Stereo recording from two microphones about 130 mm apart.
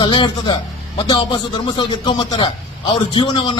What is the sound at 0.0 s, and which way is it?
A man's voice, 35° left (ahead or behind).